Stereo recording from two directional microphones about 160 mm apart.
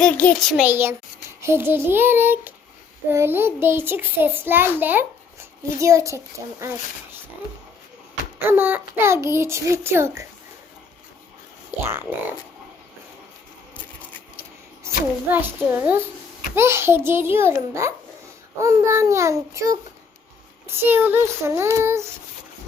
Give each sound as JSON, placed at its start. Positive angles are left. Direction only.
{"t": 0.0, "sound": "a child's voice", "side_deg": 5}
{"t": 0.6, "sound": "a child's voice", "side_deg": -15}
{"t": 8.4, "sound": "a child's voice", "side_deg": -15}
{"t": 14.8, "sound": "a child's voice", "side_deg": -15}
{"t": 20.8, "sound": "a child's voice", "side_deg": -15}